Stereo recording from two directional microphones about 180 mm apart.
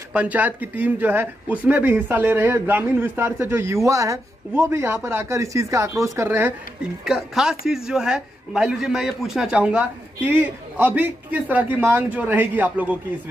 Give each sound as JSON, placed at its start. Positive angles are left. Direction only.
{"t": 0.1, "sound": "speech", "side_deg": -10}
{"t": 7.1, "sound": "speech", "side_deg": 0}